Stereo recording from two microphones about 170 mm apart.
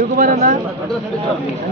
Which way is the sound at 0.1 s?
55° right (ahead or behind).